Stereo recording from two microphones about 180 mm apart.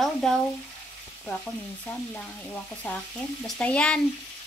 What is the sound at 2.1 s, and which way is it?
Frying, 10° left (ahead or behind).